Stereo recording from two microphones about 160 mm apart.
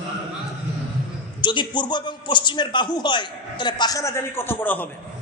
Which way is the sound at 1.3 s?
30° left (ahead or behind).